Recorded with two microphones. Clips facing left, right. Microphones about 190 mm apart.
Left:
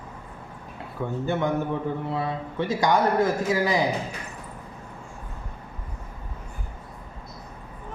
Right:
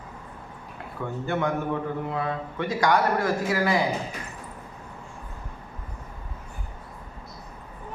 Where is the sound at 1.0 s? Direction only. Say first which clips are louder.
Left 3 dB; 15° left (ahead or behind).